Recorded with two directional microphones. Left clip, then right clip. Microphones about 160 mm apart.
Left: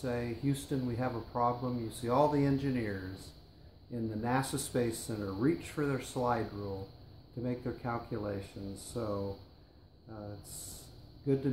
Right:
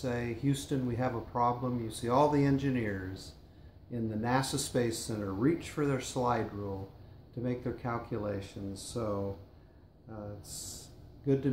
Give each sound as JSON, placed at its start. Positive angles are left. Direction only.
{"t": 0.0, "sound": "speech", "side_deg": 5}
{"t": 3.9, "sound": "speech", "side_deg": 5}
{"t": 11.3, "sound": "speech", "side_deg": 5}